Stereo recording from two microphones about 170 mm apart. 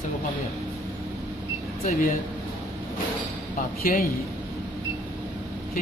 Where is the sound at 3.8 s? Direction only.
60° left (ahead or behind).